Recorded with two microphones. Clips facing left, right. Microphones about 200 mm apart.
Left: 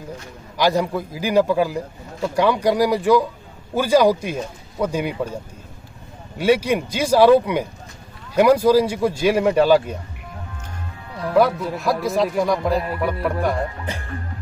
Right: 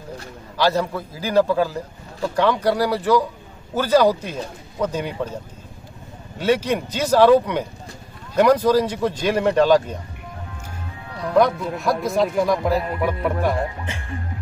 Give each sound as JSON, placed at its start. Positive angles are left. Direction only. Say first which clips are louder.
{"t": 0.6, "sound": "speech", "louder": "left 1 dB", "side_deg": 15}
{"t": 11.1, "sound": "speech", "louder": "even", "side_deg": 5}